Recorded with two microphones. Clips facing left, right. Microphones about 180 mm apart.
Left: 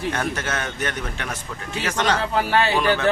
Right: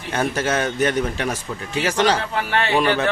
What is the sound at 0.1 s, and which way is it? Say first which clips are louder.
A man's voice: right 10 dB; 30° right (ahead or behind).